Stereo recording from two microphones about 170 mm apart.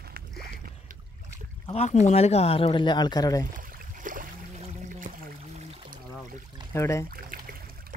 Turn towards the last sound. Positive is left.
turn(degrees=-60)  # may be behind; listen again after turning